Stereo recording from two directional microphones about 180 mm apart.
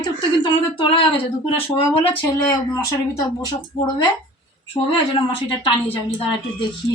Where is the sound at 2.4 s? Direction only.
20° left (ahead or behind).